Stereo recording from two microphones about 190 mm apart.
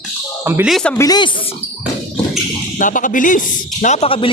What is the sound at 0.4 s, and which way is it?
Speech, 10° right (ahead or behind).